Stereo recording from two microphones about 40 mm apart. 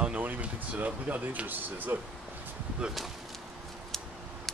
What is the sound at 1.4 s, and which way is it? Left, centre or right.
Speech, right.